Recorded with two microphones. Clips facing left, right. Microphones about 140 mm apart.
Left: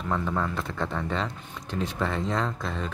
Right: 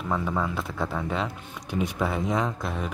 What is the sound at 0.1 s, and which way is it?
Speech, 5° right (ahead or behind).